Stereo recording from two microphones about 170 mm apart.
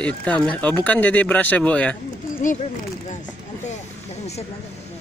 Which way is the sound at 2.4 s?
50° left (ahead or behind).